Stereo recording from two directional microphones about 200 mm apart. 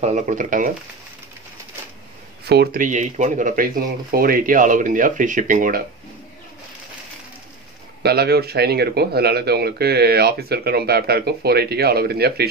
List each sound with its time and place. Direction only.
0.0 s speech: 35° right (ahead or behind)
2.4 s speech: 55° right (ahead or behind)
8.0 s speech: 55° right (ahead or behind)